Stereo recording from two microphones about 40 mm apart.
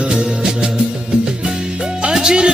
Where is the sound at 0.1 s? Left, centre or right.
Right.